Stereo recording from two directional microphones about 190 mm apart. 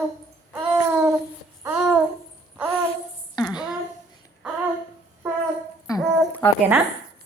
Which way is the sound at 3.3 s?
20° left (ahead or behind).